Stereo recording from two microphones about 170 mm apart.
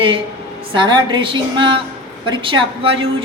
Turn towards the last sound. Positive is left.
turn(degrees=-30)  # may be behind; listen again after turning